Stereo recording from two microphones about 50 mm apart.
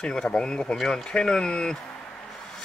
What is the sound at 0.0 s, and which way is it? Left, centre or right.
Speech, centre.